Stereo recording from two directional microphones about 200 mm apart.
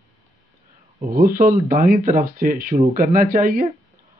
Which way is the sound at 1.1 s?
45° right (ahead or behind).